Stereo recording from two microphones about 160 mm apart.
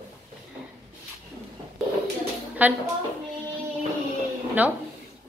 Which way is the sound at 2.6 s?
10° right (ahead or behind).